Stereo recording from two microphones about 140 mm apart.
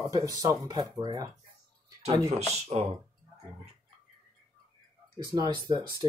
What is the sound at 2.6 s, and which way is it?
Speech, 50° right (ahead or behind).